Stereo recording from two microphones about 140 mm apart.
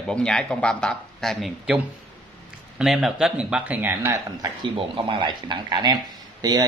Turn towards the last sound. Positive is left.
turn(degrees=-30)  # may be behind; listen again after turning